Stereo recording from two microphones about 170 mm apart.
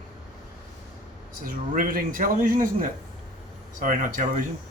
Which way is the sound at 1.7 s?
55° right (ahead or behind).